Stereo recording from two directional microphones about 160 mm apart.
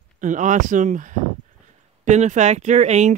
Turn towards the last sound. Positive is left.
turn(degrees=-45)  # may be behind; listen again after turning